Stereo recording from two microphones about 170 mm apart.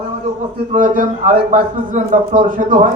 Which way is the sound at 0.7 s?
50° right (ahead or behind).